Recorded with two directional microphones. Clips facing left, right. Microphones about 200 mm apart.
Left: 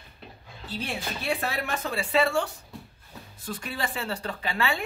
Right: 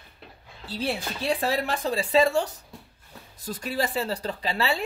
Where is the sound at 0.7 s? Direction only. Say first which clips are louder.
Right 4 dB; 35° right (ahead or behind).